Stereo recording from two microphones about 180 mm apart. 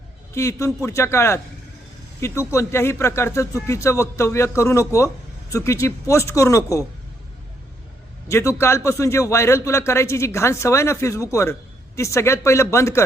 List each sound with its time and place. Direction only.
0.3 s a man's voice: 15° left (ahead or behind)
8.3 s a man's voice: 15° left (ahead or behind)